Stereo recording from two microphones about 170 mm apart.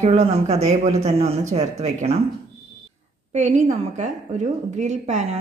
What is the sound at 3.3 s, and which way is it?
A woman's voice, 45° right (ahead or behind).